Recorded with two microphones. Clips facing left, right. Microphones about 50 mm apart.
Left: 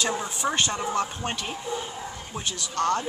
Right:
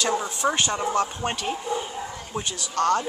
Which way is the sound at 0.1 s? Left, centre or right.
Centre.